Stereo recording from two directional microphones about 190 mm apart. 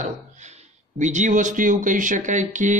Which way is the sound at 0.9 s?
40° right (ahead or behind).